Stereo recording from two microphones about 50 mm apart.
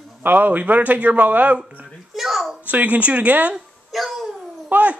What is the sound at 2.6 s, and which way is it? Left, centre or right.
Speech, right.